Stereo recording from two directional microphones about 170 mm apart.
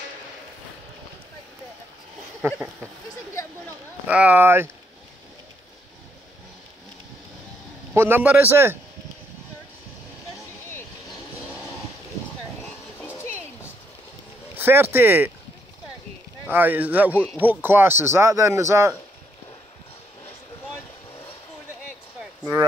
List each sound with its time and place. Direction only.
2.4 s speech: 15° right (ahead or behind)
4.1 s speech: 10° right (ahead or behind)
7.9 s speech: 15° right (ahead or behind)
13.0 s a sound: 15° left (ahead or behind)
14.6 s speech: 10° right (ahead or behind)
16.4 s speech: 10° right (ahead or behind)
17.1 s speech: 10° left (ahead or behind)
17.4 s speech: 10° right (ahead or behind)